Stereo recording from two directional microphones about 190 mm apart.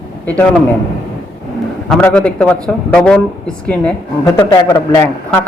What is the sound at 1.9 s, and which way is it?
Speech, 5° left (ahead or behind).